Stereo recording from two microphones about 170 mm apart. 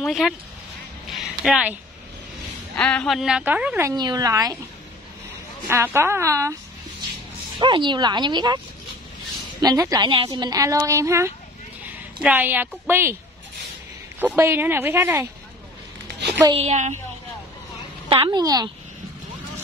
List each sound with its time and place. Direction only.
0.0 s a woman's voice: centre (ahead or behind)
1.1 s a sound: 5° right (ahead or behind)
2.7 s a woman's voice: 5° left (ahead or behind); by 3.9 s 10° right (ahead or behind)
3.9 s a woman's voice: 25° right (ahead or behind)
5.7 s speech: 15° right (ahead or behind)
7.5 s a woman's voice: 30° right (ahead or behind)
9.6 s a woman's voice: 20° right (ahead or behind)
14.2 s speech: 15° right (ahead or behind)
16.5 s a woman's voice: 40° right (ahead or behind)
18.1 s a woman's voice: 35° right (ahead or behind)
18.4 s a woman's voice: 20° right (ahead or behind)